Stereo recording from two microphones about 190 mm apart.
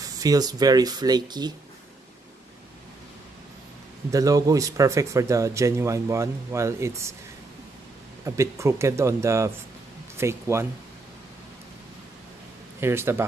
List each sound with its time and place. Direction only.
0.0 s speech: 20° right (ahead or behind)
4.1 s speech: 20° right (ahead or behind)
8.3 s speech: 15° right (ahead or behind)
12.8 s speech: 10° right (ahead or behind)